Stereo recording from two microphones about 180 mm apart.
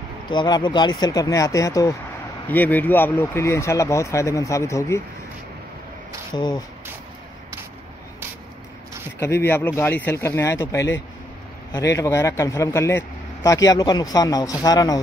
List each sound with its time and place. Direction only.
0.3 s a man's voice: 25° left (ahead or behind)
6.3 s a man's voice: 25° left (ahead or behind)
9.2 s a man's voice: 15° left (ahead or behind)